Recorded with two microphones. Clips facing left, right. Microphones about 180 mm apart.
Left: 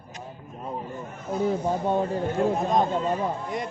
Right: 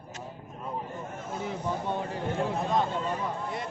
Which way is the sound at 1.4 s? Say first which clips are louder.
Left 7 dB; 45° left (ahead or behind).